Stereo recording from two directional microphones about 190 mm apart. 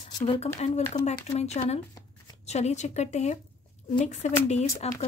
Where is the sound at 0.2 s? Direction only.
35° left (ahead or behind).